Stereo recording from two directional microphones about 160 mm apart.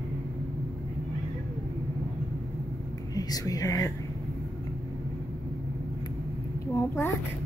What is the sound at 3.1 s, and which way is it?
Speech, 25° left (ahead or behind).